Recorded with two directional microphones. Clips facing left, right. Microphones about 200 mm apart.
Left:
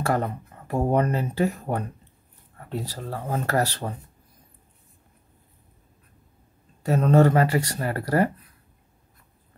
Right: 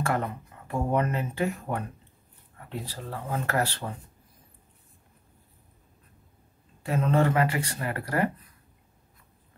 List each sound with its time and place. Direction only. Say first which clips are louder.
0.0 s speech: left 3 dB; 40° left (ahead or behind)
6.8 s speech: left 6 dB; 40° left (ahead or behind)